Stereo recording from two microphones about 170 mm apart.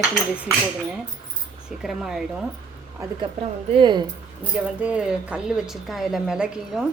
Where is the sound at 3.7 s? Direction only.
25° right (ahead or behind).